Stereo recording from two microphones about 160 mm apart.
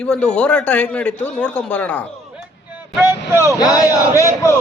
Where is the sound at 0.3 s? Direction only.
5° left (ahead or behind).